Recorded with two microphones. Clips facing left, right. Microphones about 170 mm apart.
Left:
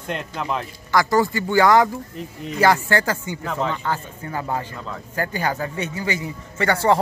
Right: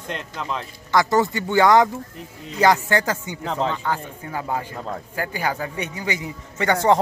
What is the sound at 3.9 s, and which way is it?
A man's voice, 10° right (ahead or behind).